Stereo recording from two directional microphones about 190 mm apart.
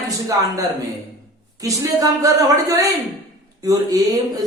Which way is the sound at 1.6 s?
15° right (ahead or behind).